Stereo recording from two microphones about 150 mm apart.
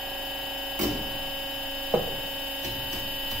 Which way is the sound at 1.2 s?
Centre (ahead or behind).